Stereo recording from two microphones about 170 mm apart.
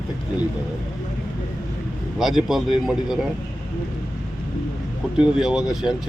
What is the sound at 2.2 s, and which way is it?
Speech, centre (ahead or behind).